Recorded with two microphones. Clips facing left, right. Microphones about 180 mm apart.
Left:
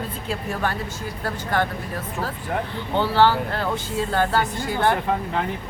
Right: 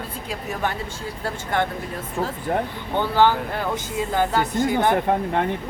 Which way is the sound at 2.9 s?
15° right (ahead or behind).